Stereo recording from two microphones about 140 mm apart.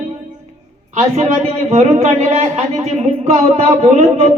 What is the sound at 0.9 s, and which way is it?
A man's voice, 50° right (ahead or behind).